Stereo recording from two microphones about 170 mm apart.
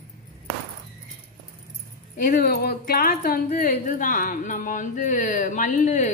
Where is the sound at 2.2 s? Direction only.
55° left (ahead or behind).